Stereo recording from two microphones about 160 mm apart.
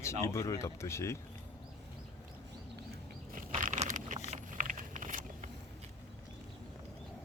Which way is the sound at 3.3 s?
55° right (ahead or behind).